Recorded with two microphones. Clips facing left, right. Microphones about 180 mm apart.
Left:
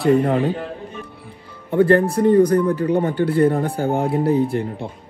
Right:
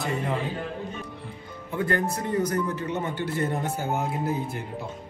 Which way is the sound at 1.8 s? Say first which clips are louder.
Left 12 dB; 30° left (ahead or behind).